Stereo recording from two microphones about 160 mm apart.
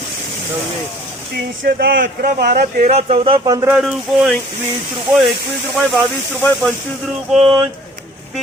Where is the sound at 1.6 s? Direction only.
70° right (ahead or behind).